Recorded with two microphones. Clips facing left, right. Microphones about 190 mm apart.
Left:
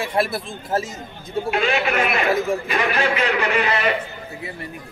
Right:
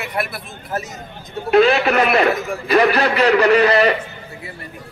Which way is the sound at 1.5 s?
40° right (ahead or behind).